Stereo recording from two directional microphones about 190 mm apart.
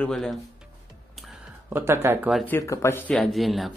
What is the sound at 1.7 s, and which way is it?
Speech, 10° right (ahead or behind).